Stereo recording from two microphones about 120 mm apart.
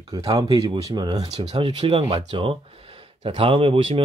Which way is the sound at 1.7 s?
45° right (ahead or behind).